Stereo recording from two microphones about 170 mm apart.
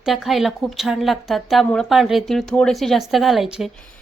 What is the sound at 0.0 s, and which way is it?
A woman's voice, centre (ahead or behind).